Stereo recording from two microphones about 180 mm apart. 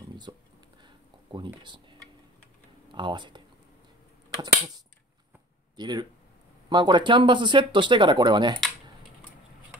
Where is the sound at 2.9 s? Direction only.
25° right (ahead or behind).